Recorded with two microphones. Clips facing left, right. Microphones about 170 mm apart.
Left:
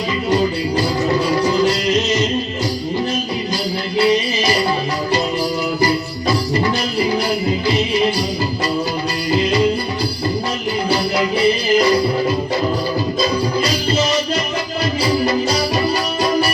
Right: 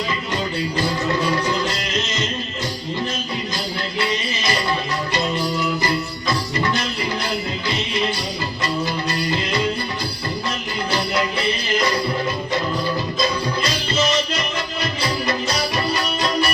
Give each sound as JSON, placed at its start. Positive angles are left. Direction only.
{"t": 0.8, "sound": "music", "side_deg": 35}
{"t": 1.9, "sound": "music", "side_deg": 15}
{"t": 3.9, "sound": "music", "side_deg": 35}
{"t": 10.9, "sound": "music", "side_deg": 10}
{"t": 11.7, "sound": "music", "side_deg": 30}
{"t": 13.1, "sound": "music", "side_deg": 35}